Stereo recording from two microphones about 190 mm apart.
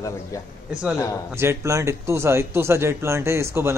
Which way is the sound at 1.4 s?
15° right (ahead or behind).